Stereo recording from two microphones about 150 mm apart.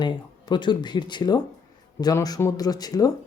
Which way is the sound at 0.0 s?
30° left (ahead or behind).